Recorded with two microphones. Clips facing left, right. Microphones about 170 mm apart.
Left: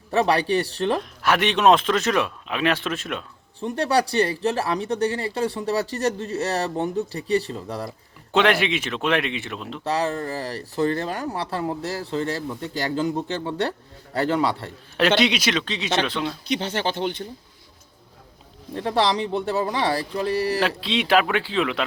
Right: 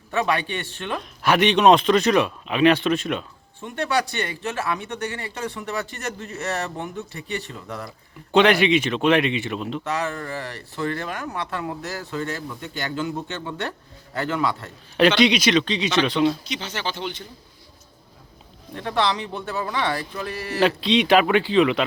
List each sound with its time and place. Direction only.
0.1 s speech: 35° left (ahead or behind)
1.2 s speech: centre (ahead or behind)
3.6 s speech: 35° left (ahead or behind)
8.3 s speech: centre (ahead or behind)
9.8 s speech: 30° left (ahead or behind)
15.2 s speech: 5° left (ahead or behind)
16.5 s speech: 55° left (ahead or behind)
18.7 s speech: 30° left (ahead or behind)
20.6 s speech: centre (ahead or behind)